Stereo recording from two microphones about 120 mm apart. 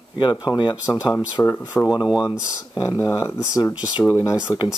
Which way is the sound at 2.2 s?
25° left (ahead or behind).